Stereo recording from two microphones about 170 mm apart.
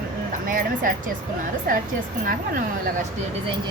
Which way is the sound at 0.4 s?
55° right (ahead or behind).